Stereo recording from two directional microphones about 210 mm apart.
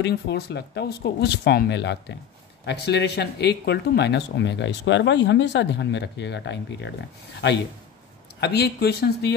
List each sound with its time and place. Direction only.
0.0 s speech: 50° left (ahead or behind)
8.4 s speech: 50° left (ahead or behind)